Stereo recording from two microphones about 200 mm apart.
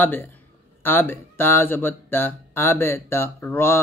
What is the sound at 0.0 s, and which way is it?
Speech, 10° left (ahead or behind).